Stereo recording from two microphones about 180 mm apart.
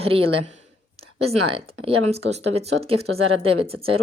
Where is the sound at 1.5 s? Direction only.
35° right (ahead or behind).